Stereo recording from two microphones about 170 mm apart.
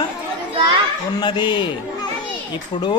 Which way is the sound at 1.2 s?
25° left (ahead or behind).